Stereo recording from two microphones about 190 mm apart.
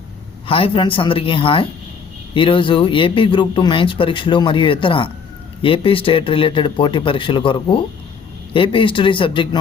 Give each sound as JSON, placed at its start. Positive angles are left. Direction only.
{"t": 0.4, "sound": "a man's voice", "side_deg": 30}